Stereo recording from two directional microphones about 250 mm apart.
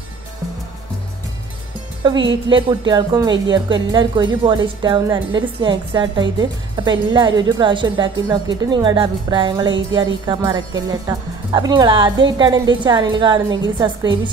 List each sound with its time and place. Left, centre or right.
2.0 s a woman's voice: centre